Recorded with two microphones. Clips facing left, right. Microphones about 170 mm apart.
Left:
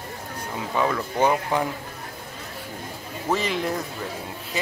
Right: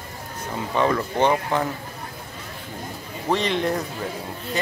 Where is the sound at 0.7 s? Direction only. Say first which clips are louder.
Right 3 dB; 5° left (ahead or behind).